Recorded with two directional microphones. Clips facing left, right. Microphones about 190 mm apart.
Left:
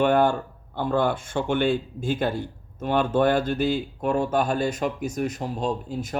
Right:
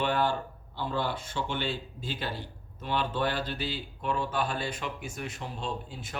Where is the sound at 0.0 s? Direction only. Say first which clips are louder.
Left 8 dB; 50° left (ahead or behind).